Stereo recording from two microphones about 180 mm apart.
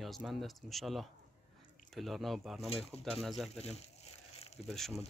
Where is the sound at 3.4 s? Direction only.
35° left (ahead or behind).